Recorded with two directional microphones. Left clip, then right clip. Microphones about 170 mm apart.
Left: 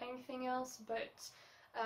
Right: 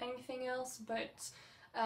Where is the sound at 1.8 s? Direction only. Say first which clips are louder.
Right 4 dB; 15° left (ahead or behind).